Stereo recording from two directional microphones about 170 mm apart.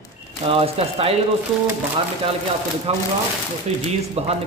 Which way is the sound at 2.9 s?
35° right (ahead or behind).